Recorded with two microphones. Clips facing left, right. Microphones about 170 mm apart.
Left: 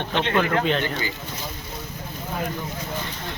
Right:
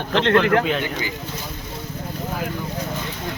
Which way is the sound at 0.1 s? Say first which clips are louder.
Right 7 dB; 90° right.